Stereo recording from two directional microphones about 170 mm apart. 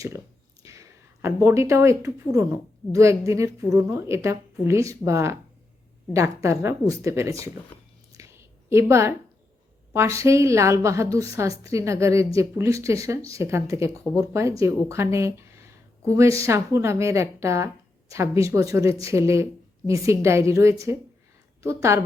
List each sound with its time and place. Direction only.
0.6 s a woman's voice: 20° right (ahead or behind)
8.1 s a sound: 15° right (ahead or behind)
9.9 s a woman's voice: 15° right (ahead or behind)